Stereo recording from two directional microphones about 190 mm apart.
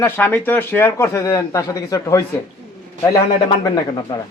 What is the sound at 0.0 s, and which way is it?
A man's voice, 10° left (ahead or behind).